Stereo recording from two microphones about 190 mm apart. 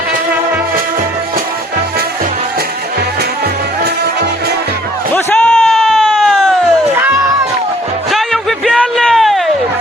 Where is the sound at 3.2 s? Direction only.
60° right (ahead or behind).